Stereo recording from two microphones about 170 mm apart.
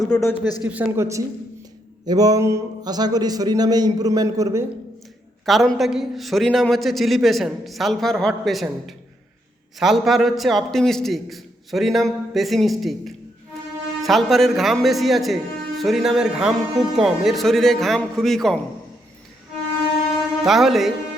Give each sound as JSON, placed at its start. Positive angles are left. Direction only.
{"t": 0.2, "sound": "a man's voice", "side_deg": 20}
{"t": 0.6, "sound": "a man's voice", "side_deg": -10}
{"t": 5.5, "sound": "a man's voice", "side_deg": 0}
{"t": 20.4, "sound": "a man's voice", "side_deg": 0}